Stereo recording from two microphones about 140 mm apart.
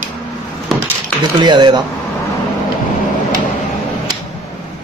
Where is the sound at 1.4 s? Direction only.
30° right (ahead or behind).